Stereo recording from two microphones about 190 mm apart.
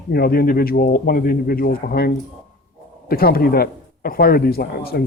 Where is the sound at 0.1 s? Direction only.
55° left (ahead or behind).